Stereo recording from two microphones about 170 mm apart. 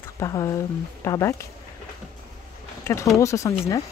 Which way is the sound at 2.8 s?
15° left (ahead or behind).